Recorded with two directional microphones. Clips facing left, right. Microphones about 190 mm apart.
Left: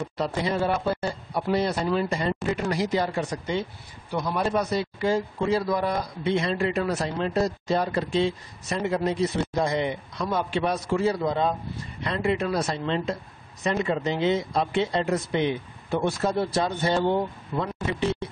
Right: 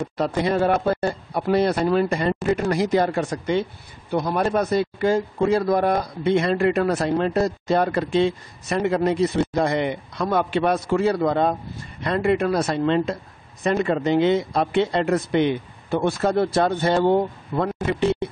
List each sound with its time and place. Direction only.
0.2 s a man's voice: 55° right (ahead or behind)